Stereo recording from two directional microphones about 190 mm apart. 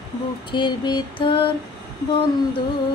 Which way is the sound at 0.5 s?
25° left (ahead or behind).